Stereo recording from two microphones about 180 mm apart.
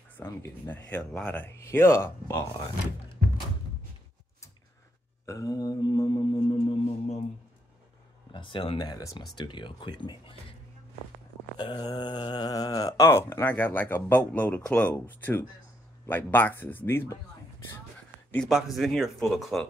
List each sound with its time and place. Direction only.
0.2 s speech: 10° left (ahead or behind)
5.2 s mantra: 20° left (ahead or behind); by 7.2 s 35° left (ahead or behind)
8.3 s speech: 25° left (ahead or behind)
11.5 s speech: 25° left (ahead or behind)
18.3 s speech: centre (ahead or behind)